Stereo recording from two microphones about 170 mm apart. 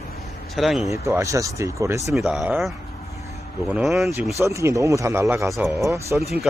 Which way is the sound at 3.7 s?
Centre (ahead or behind).